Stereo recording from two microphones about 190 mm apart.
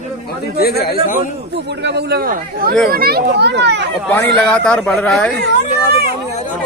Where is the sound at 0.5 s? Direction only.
55° left (ahead or behind).